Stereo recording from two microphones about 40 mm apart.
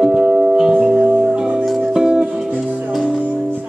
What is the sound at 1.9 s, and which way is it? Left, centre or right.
Music, centre.